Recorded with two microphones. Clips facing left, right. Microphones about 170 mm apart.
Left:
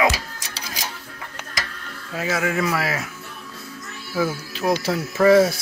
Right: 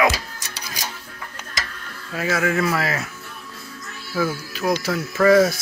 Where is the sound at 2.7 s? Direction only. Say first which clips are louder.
Right 1 dB; 5° left (ahead or behind).